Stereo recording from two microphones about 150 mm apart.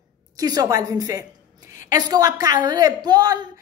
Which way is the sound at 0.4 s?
25° right (ahead or behind).